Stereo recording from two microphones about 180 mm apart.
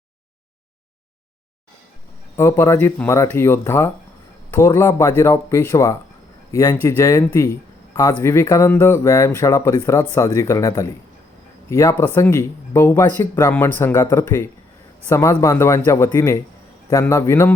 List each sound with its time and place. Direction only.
2.3 s speech: 15° left (ahead or behind)